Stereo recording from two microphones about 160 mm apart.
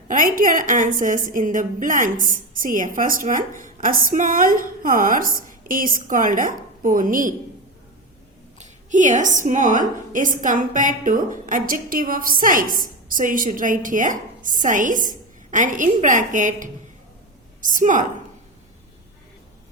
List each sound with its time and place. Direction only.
0.1 s a woman's voice: 60° right (ahead or behind)
8.9 s a woman's voice: 50° right (ahead or behind)